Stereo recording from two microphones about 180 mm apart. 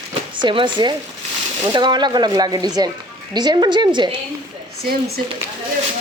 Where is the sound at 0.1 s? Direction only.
25° right (ahead or behind).